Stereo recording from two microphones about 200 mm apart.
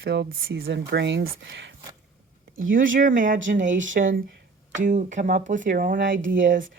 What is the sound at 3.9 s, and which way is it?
Speech, 40° right (ahead or behind).